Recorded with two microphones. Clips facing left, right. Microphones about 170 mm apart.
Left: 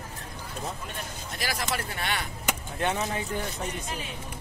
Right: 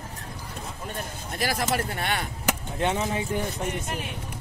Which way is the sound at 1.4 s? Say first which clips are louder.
Right 5 dB; 50° right (ahead or behind).